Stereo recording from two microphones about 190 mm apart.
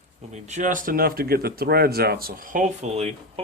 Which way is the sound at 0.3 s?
40° right (ahead or behind).